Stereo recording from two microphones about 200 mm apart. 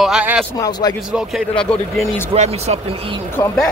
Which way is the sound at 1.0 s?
Centre (ahead or behind).